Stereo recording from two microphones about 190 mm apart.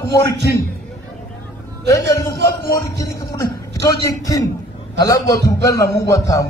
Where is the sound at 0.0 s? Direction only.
15° left (ahead or behind).